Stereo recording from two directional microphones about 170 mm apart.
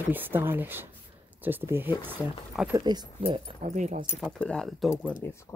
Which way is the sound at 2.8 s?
25° right (ahead or behind).